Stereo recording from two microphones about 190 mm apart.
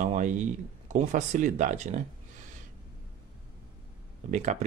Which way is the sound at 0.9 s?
40° right (ahead or behind).